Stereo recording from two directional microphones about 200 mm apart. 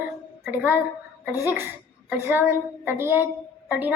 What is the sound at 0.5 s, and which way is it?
A woman's voice, 10° right (ahead or behind).